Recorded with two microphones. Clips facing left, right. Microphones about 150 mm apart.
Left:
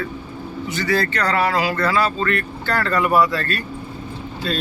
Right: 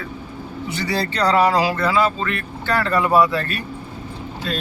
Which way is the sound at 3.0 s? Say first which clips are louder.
Even; 25° right (ahead or behind).